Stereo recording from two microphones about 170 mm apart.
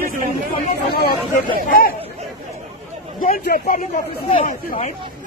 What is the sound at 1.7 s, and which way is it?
Speech, 60° left (ahead or behind).